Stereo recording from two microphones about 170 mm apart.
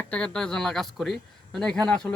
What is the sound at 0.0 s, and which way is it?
Speech, 5° left (ahead or behind).